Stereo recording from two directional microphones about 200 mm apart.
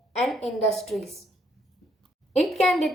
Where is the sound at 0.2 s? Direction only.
Centre (ahead or behind).